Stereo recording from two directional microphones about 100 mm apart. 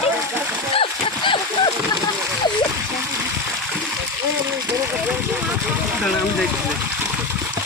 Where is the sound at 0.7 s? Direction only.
60° left (ahead or behind).